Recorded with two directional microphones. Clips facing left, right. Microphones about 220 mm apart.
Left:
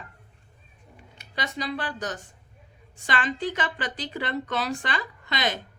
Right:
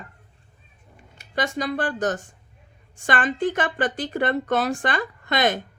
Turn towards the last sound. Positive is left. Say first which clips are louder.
# right 7 dB
turn(degrees=-50)  # may be behind; listen again after turning